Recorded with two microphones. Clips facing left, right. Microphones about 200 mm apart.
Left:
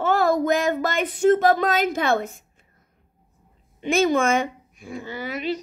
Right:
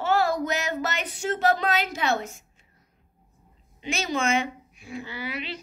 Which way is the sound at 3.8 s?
50° left (ahead or behind).